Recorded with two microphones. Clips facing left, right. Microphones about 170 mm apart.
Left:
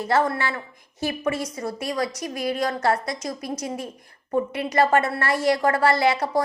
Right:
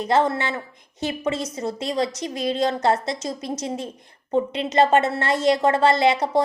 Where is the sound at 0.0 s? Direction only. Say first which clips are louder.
Right 2 dB; 20° right (ahead or behind).